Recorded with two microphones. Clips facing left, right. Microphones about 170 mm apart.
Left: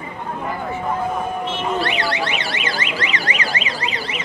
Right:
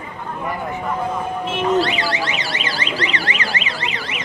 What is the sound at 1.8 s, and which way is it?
Car alarm, 65° left (ahead or behind).